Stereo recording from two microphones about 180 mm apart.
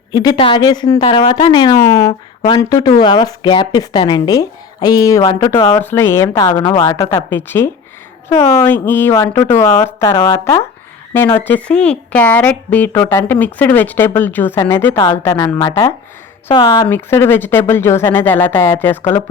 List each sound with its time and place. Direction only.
0.1 s speech: 20° left (ahead or behind)
16.9 s speech: 15° left (ahead or behind)